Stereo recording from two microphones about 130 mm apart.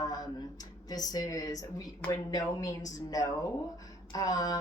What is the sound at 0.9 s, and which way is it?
A woman's voice, 30° left (ahead or behind).